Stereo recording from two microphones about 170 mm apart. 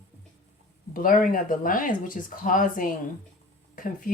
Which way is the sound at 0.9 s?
55° left (ahead or behind).